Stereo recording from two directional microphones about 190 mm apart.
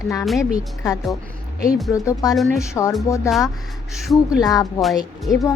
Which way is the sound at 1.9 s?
15° left (ahead or behind).